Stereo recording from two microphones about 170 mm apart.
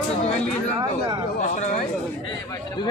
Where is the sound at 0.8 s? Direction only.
20° right (ahead or behind).